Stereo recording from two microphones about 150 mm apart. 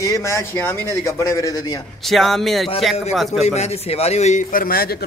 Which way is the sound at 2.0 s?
Centre (ahead or behind).